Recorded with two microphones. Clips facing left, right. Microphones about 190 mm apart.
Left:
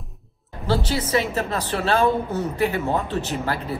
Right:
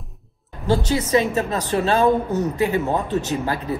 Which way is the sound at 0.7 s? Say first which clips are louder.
Right 3 dB; 20° right (ahead or behind).